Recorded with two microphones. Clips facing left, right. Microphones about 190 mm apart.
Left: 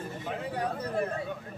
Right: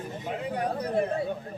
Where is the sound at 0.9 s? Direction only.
35° right (ahead or behind).